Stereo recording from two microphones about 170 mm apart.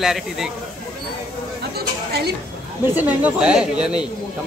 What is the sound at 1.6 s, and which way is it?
Chatter, 70° right (ahead or behind).